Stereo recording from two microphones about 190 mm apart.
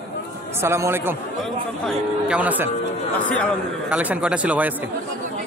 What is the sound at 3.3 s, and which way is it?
Speech, 5° left (ahead or behind).